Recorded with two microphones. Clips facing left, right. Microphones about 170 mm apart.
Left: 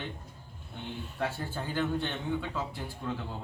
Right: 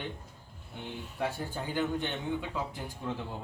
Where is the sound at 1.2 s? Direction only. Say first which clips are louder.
Even; 15° right (ahead or behind).